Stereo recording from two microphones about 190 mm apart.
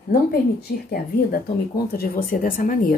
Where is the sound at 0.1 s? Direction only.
55° left (ahead or behind).